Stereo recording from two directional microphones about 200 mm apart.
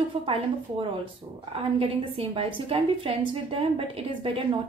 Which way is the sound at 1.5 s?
30° right (ahead or behind).